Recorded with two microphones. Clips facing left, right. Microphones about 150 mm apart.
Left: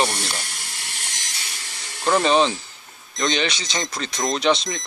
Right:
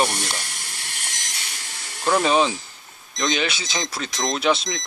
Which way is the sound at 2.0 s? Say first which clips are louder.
Left 1 dB; 5° right (ahead or behind).